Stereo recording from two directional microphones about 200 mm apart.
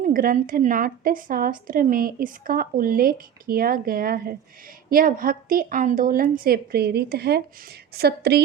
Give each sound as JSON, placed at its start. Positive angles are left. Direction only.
{"t": 0.0, "sound": "a woman's voice", "side_deg": -45}